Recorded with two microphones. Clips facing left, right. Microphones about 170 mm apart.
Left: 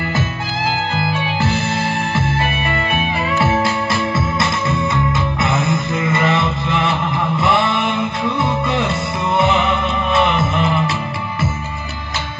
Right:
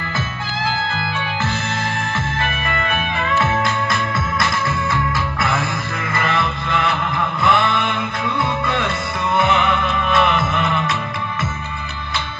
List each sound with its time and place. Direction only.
0.9 s music: 40° left (ahead or behind)